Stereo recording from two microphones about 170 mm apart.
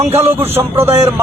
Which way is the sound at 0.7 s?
35° right (ahead or behind).